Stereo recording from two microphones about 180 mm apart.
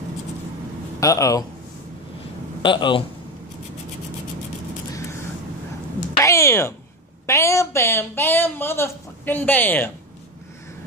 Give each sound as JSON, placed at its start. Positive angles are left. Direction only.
{"t": 0.9, "sound": "speech", "side_deg": 20}
{"t": 2.6, "sound": "speech", "side_deg": 25}
{"t": 6.2, "sound": "speech", "side_deg": 15}